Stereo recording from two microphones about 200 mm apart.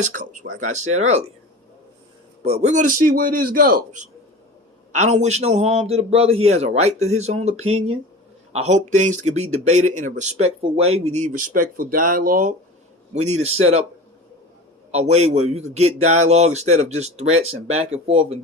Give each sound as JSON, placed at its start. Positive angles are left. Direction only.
{"t": 0.0, "sound": "a man's voice", "side_deg": -40}
{"t": 2.4, "sound": "a man's voice", "side_deg": -35}
{"t": 14.9, "sound": "a man's voice", "side_deg": -35}